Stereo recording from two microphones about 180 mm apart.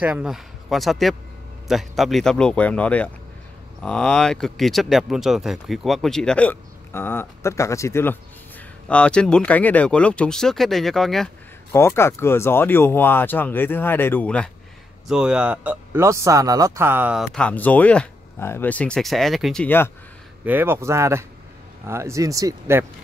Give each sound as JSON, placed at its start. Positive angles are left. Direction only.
{"t": 0.0, "sound": "speech", "side_deg": -5}
{"t": 11.7, "sound": "speech", "side_deg": 15}
{"t": 15.0, "sound": "speech", "side_deg": -5}
{"t": 20.4, "sound": "speech", "side_deg": -10}